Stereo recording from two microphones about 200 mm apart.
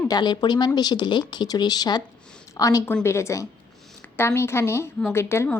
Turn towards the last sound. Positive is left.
turn(degrees=10)  # may be behind; listen again after turning